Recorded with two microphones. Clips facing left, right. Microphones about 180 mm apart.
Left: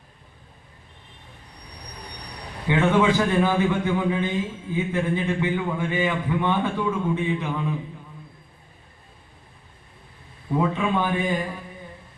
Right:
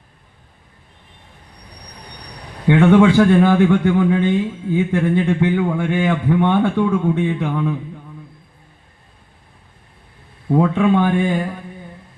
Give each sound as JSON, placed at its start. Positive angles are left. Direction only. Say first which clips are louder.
{"t": 2.6, "sound": "a man's voice", "louder": "right 8 dB", "side_deg": -65}
{"t": 10.5, "sound": "a man's voice", "louder": "right 8 dB", "side_deg": -65}